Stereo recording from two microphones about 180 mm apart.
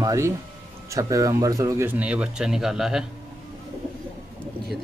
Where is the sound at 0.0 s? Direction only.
15° right (ahead or behind).